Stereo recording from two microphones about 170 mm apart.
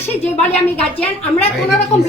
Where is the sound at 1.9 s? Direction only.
40° left (ahead or behind).